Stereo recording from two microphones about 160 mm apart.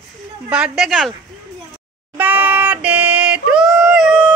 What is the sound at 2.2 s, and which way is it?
Yodeling, 10° right (ahead or behind).